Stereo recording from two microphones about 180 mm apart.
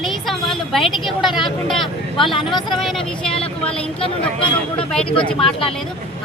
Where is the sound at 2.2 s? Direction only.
30° left (ahead or behind).